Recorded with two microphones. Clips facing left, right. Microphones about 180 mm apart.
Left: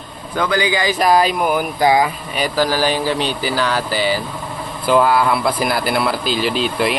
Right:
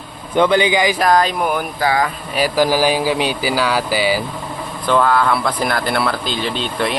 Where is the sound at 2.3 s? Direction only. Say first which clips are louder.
Right 5 dB; 10° right (ahead or behind).